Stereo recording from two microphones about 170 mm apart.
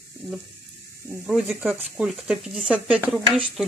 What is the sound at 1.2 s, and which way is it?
Speech, 10° right (ahead or behind).